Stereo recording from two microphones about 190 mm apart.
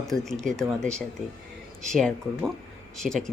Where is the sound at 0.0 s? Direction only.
Centre (ahead or behind).